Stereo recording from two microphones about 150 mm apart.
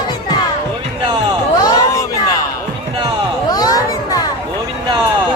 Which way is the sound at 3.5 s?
25° left (ahead or behind).